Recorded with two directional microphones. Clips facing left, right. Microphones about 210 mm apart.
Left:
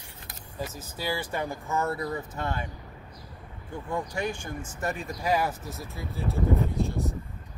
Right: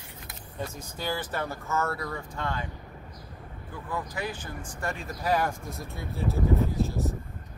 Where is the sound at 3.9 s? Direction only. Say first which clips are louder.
Left 3 dB; 25° left (ahead or behind).